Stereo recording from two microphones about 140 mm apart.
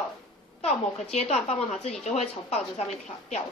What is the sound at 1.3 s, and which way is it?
A woman's voice, 50° left (ahead or behind).